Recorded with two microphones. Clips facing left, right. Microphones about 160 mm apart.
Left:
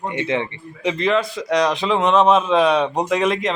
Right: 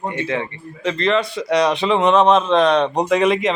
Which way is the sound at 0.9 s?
5° left (ahead or behind).